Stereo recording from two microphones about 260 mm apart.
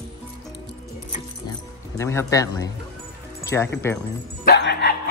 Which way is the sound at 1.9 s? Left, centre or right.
Centre.